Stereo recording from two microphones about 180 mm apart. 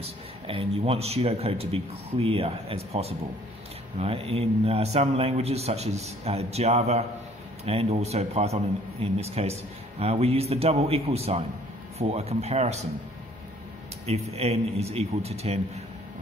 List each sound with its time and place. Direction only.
0.0 s speech: 30° right (ahead or behind)
14.3 s speech: 35° right (ahead or behind)